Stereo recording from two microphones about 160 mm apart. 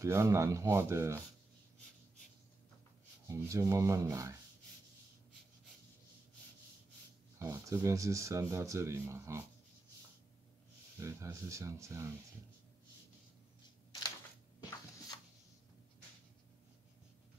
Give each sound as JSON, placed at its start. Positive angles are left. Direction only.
{"t": 0.0, "sound": "speech", "side_deg": -15}
{"t": 3.3, "sound": "speech", "side_deg": -20}
{"t": 7.3, "sound": "speech", "side_deg": -15}
{"t": 11.0, "sound": "speech", "side_deg": -15}